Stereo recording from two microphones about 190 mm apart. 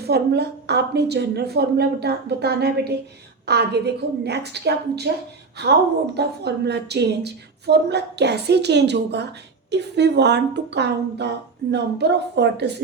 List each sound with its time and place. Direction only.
0.0 s speech: 60° right (ahead or behind)
6.1 s speech: 60° right (ahead or behind)